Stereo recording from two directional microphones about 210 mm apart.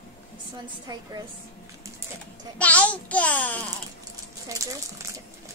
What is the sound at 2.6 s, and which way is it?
A child's voice, 5° left (ahead or behind).